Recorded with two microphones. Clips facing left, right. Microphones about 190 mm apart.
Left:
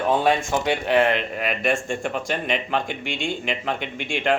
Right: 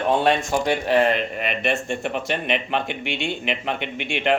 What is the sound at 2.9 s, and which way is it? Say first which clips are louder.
Speech: right 1 dB; 60° right (ahead or behind).